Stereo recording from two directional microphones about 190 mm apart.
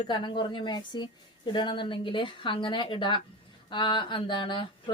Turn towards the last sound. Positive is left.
turn(degrees=25)  # may be behind; listen again after turning